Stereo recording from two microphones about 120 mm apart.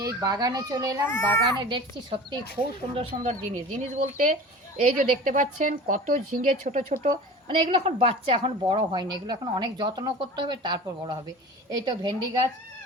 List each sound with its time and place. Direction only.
0.0 s a woman's voice: 30° right (ahead or behind)
1.0 s a child's voice: 20° left (ahead or behind)
1.5 s a woman's voice: 40° right (ahead or behind)
3.2 s speech: 80° right
7.1 s a woman's voice: 50° right (ahead or behind)